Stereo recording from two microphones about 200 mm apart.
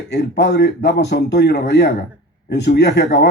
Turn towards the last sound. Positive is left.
turn(degrees=55)  # may be behind; listen again after turning